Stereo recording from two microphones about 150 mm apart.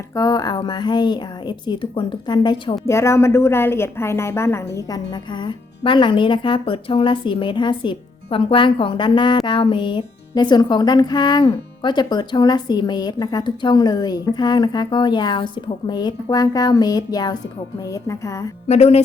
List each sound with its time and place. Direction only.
0.2 s a woman's voice: 25° left (ahead or behind)
2.8 s a woman's voice: 20° left (ahead or behind)
18.7 s speech: 45° left (ahead or behind)